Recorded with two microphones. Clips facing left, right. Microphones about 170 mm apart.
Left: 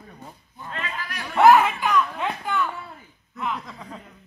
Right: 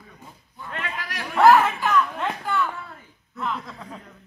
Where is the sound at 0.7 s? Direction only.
75° right (ahead or behind).